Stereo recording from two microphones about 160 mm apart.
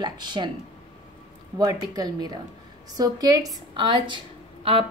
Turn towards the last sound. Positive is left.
turn(degrees=-30)  # may be behind; listen again after turning